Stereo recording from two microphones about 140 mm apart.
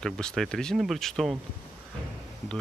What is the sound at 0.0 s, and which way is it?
Speech, 5° left (ahead or behind).